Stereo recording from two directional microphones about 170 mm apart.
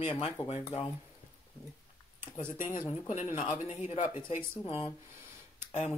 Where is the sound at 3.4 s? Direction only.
40° left (ahead or behind).